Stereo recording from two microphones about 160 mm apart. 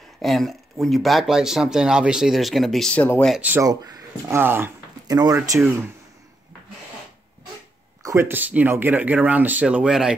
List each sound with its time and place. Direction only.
0.2 s speech: centre (ahead or behind)
3.3 s speech: 10° right (ahead or behind)
8.0 s speech: 20° right (ahead or behind); by 10.1 s 5° right (ahead or behind)